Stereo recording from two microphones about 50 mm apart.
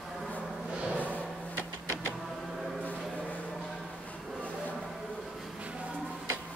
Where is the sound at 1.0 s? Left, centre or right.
Left.